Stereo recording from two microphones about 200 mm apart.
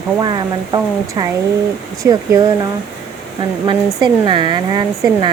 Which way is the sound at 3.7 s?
25° right (ahead or behind).